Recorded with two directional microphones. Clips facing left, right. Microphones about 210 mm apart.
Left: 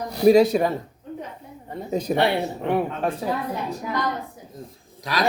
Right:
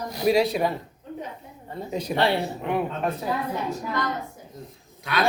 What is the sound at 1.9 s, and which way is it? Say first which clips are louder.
Speech: left 5 dB; 45° left (ahead or behind).